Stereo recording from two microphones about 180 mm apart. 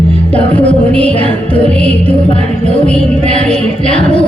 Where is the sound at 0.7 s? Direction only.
5° left (ahead or behind).